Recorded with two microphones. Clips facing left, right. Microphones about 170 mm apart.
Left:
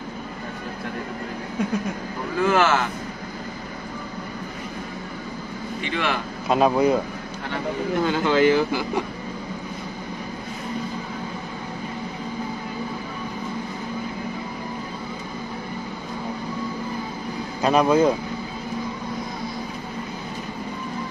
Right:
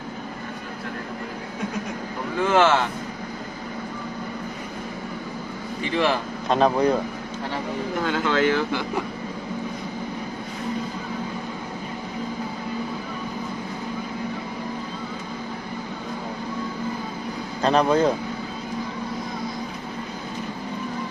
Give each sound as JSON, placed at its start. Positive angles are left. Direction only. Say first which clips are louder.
{"t": 2.5, "sound": "speech", "louder": "right 3 dB", "side_deg": -25}
{"t": 5.9, "sound": "a man's voice", "louder": "right 4 dB", "side_deg": -30}
{"t": 6.5, "sound": "speech", "louder": "left 1 dB", "side_deg": 10}
{"t": 8.0, "sound": "speech", "louder": "left 3 dB", "side_deg": 5}
{"t": 17.6, "sound": "speech", "louder": "left 1 dB", "side_deg": 10}